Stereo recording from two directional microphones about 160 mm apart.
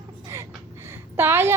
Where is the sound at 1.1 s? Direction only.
15° right (ahead or behind).